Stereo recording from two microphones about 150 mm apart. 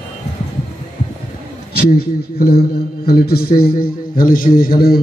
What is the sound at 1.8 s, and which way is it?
A man's voice, 90° left.